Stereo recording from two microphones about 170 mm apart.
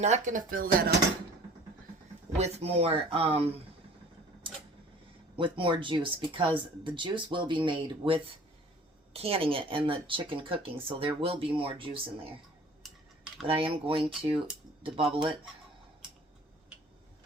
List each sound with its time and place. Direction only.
0.0 s speech: 45° right (ahead or behind)
2.4 s speech: 40° right (ahead or behind)
5.4 s speech: 30° right (ahead or behind)
12.8 s cutlery: centre (ahead or behind)
13.5 s speech: 35° right (ahead or behind)